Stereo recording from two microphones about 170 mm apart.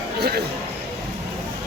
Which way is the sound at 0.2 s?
70° right (ahead or behind).